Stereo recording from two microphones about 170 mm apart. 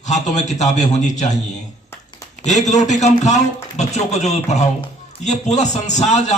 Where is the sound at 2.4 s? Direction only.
45° left (ahead or behind).